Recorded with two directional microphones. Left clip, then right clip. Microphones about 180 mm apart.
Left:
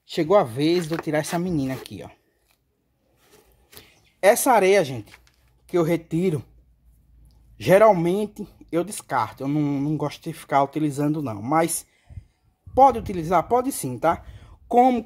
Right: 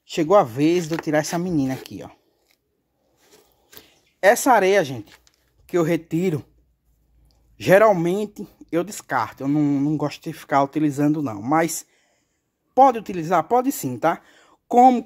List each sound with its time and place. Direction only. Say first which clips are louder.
0.1 s speech: right 2 dB; 30° right (ahead or behind)
3.7 s speech: even; 20° right (ahead or behind)
5.7 s speech: right 1 dB; 35° right (ahead or behind)
7.5 s speech: right 1 dB; 35° right (ahead or behind)